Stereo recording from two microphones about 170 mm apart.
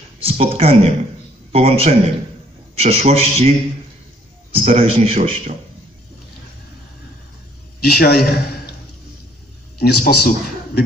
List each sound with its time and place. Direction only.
0.2 s a man's voice: 35° right (ahead or behind)
7.8 s a man's voice: 65° left (ahead or behind)
9.8 s a man's voice: 70° left (ahead or behind)